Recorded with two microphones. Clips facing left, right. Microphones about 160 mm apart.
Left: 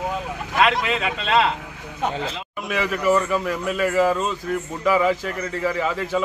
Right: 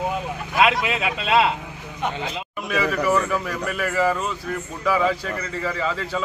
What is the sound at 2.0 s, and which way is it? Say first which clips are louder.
Speech: left 2 dB; 35° left (ahead or behind).